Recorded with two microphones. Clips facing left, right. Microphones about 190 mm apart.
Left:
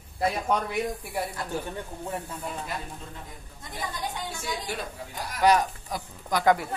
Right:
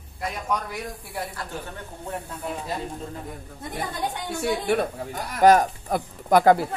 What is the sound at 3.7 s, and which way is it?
Speech, 60° right (ahead or behind).